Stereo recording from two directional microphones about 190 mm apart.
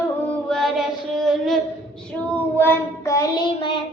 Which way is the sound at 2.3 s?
10° left (ahead or behind).